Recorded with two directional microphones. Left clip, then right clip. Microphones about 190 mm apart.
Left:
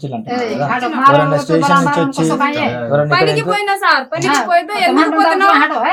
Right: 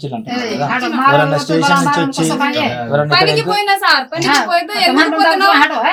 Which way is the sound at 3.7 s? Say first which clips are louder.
Right 1 dB; 5° left (ahead or behind).